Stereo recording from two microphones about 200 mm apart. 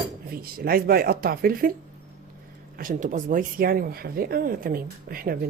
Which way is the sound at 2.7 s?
40° right (ahead or behind).